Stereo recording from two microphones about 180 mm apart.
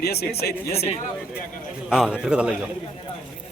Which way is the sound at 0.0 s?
60° left (ahead or behind).